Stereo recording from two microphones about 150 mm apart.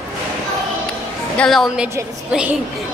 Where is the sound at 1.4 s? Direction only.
Centre (ahead or behind).